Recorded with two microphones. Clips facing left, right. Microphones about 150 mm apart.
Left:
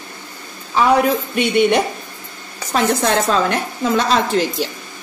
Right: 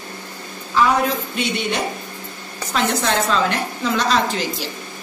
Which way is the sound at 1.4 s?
60° left (ahead or behind).